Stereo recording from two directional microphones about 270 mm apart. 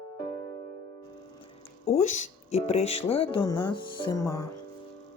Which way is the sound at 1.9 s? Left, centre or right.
Left.